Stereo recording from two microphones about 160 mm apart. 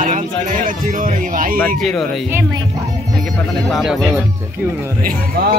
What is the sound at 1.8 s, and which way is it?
Speech, centre (ahead or behind).